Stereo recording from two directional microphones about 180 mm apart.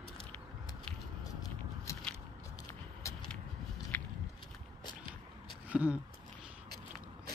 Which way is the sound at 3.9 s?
10° left (ahead or behind).